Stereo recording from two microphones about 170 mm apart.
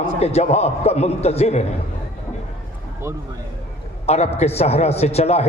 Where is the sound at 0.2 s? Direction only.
40° left (ahead or behind).